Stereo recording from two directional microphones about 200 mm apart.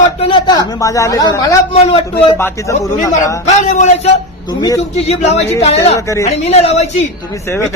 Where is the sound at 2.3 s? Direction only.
10° left (ahead or behind).